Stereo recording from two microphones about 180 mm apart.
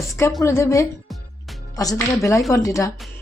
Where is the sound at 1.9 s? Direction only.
15° left (ahead or behind).